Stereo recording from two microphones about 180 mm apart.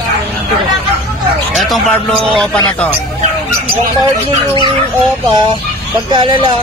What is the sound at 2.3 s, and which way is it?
Speech, 5° left (ahead or behind).